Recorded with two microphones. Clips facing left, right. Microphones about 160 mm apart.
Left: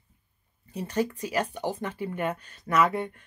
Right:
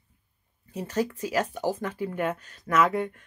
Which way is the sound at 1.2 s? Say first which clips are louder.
Right 2 dB; 5° right (ahead or behind).